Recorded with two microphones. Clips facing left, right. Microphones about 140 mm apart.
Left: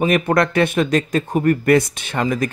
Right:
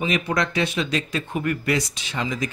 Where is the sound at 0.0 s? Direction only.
55° left (ahead or behind).